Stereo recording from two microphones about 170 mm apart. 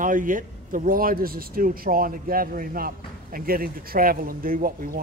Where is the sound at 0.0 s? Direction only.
50° right (ahead or behind).